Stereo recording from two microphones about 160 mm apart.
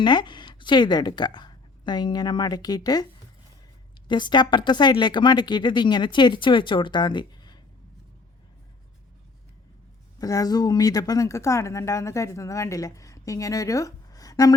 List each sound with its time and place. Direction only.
0.0 s a woman's voice: 30° left (ahead or behind)
4.1 s speech: 30° left (ahead or behind)
10.2 s speech: 20° left (ahead or behind)